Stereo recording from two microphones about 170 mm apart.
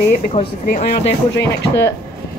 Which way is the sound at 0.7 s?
40° left (ahead or behind).